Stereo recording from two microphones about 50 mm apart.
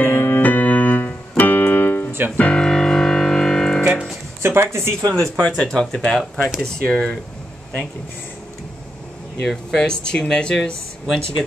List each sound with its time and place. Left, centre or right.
0.0 s music: left
0.4 s keyboard: left
2.5 s music: centre
4.4 s a sound: right
4.7 s speech: right
5.4 s speech: centre
6.3 s speech: centre
6.6 s speech: centre
9.5 s speech: centre
9.8 s speech: centre